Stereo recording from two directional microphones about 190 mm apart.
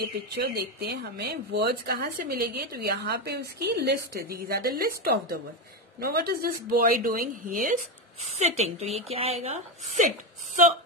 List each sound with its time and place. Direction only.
0.0 s speech: 55° right (ahead or behind); by 10.0 s 35° right (ahead or behind)